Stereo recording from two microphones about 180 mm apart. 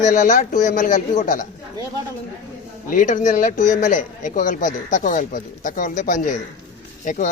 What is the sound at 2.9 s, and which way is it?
Speech, 45° left (ahead or behind).